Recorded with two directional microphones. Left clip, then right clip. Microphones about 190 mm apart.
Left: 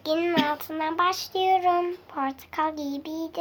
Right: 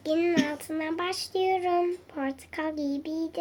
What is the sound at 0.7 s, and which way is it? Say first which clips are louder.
Speech: left 2 dB; 35° left (ahead or behind).